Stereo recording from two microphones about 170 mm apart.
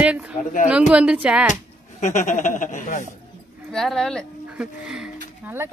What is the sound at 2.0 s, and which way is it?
Speech, 45° left (ahead or behind).